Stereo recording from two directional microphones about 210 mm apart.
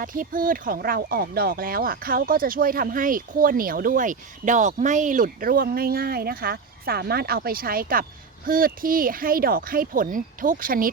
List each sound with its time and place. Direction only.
0.0 s speech: 40° right (ahead or behind)